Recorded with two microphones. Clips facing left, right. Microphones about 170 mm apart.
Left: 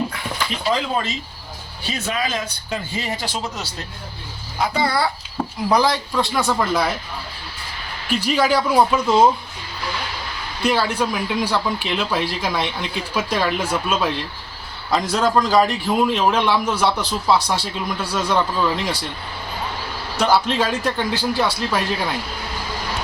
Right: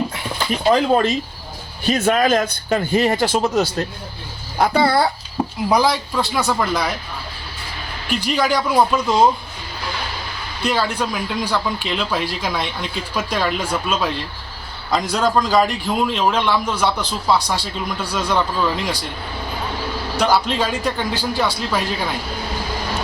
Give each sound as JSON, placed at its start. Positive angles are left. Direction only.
{"t": 0.1, "sound": "a sound", "side_deg": -25}
{"t": 0.6, "sound": "speech", "side_deg": -50}
{"t": 5.4, "sound": "speech", "side_deg": -10}
{"t": 8.3, "sound": "speech", "side_deg": 5}
{"t": 10.6, "sound": "speech", "side_deg": 10}
{"t": 15.1, "sound": "speech", "side_deg": 0}
{"t": 20.1, "sound": "speech", "side_deg": 0}